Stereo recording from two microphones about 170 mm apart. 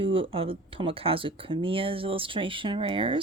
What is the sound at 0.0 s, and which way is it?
Speech, 30° right (ahead or behind).